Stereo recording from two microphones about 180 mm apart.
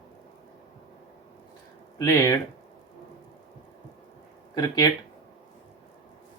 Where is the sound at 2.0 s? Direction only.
20° left (ahead or behind).